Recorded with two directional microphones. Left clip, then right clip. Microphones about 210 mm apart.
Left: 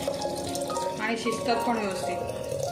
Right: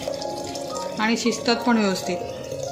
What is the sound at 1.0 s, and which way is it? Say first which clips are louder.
Speech: right 5 dB; 60° right (ahead or behind).